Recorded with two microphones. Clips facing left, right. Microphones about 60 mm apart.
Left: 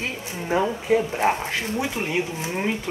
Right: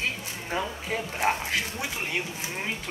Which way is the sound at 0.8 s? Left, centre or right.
Centre.